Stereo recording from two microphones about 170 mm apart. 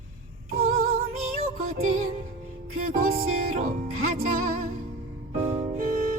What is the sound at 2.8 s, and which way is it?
Music, 60° right (ahead or behind).